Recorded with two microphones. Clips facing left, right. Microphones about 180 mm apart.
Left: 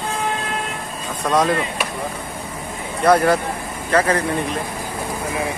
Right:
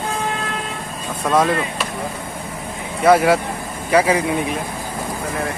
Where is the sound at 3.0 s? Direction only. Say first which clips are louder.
Right 2 dB; 5° right (ahead or behind).